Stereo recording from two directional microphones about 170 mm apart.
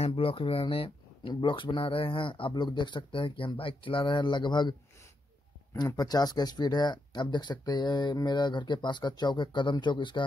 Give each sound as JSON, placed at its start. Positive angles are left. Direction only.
{"t": 0.0, "sound": "speech", "side_deg": 30}